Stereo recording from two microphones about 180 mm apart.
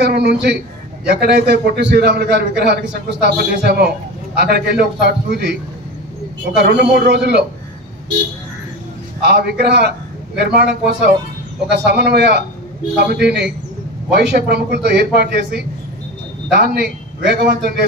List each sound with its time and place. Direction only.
0.0 s a man's voice: 65° right (ahead or behind)
9.2 s a man's voice: 65° right (ahead or behind)